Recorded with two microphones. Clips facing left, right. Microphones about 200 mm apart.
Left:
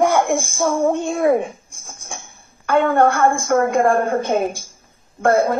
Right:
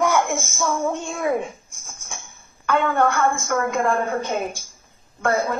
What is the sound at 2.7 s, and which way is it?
A woman's voice, 50° left (ahead or behind).